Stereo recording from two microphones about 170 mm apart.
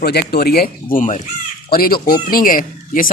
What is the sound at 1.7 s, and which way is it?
Speech, 60° left (ahead or behind).